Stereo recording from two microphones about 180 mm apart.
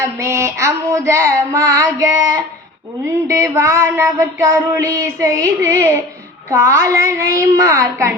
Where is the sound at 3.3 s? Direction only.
15° right (ahead or behind).